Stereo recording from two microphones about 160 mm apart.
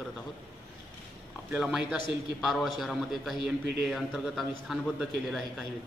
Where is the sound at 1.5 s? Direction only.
5° right (ahead or behind).